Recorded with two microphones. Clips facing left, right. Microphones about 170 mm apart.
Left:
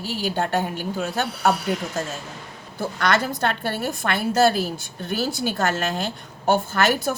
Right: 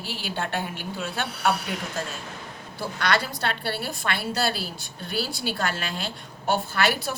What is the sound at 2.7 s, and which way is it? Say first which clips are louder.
A woman's voice: left 3 dB; 45° left (ahead or behind).